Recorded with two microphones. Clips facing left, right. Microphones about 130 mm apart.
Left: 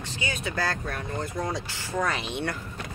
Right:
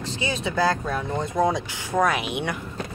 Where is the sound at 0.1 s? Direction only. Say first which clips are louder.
Right 5 dB; 30° right (ahead or behind).